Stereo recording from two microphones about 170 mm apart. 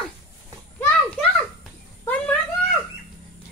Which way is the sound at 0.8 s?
10° left (ahead or behind).